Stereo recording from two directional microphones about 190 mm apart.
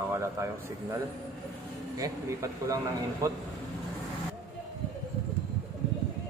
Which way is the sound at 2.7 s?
20° right (ahead or behind).